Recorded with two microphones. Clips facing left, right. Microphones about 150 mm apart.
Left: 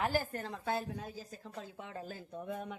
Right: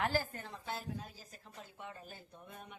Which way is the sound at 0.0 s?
15° left (ahead or behind).